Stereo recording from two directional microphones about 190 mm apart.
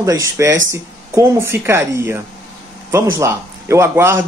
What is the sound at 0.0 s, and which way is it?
A man's voice, 15° right (ahead or behind).